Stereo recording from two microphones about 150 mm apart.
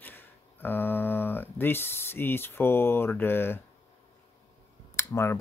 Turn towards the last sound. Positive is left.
turn(degrees=20)  # may be behind; listen again after turning